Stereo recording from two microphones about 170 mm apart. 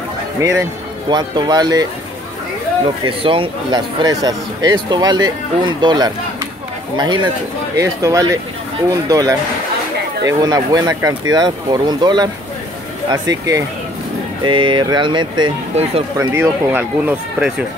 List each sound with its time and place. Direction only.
0.4 s speech: 20° right (ahead or behind)
3.1 s speech: 30° right (ahead or behind)
15.7 s speech: 40° right (ahead or behind)
16.2 s speech: 15° right (ahead or behind)